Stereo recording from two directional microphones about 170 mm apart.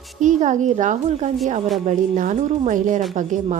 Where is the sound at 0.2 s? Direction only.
45° right (ahead or behind).